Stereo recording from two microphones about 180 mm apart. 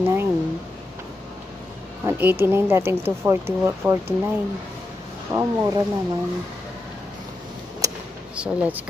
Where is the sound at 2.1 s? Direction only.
10° right (ahead or behind).